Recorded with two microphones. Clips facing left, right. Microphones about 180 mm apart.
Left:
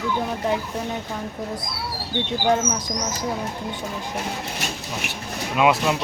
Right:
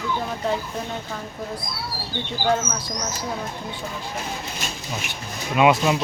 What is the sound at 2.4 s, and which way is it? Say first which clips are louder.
Speech: left 1 dB; 15° left (ahead or behind).